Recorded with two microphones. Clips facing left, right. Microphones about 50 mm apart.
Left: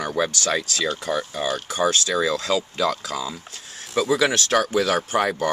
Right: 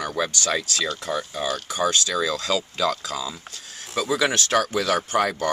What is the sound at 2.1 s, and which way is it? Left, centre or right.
Speech, centre.